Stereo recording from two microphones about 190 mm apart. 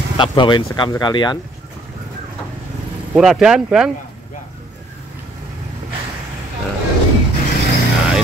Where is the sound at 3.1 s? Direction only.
5° right (ahead or behind).